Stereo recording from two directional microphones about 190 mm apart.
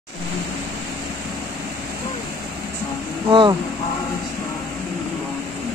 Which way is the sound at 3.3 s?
25° right (ahead or behind).